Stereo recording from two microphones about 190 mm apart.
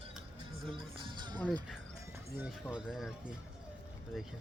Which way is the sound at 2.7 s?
Centre (ahead or behind).